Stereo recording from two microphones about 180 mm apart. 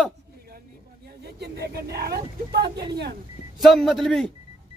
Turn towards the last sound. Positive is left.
turn(degrees=0)  # may be behind; listen again after turning